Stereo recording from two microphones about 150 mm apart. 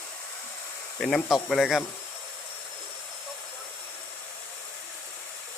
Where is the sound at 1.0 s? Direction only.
5° left (ahead or behind).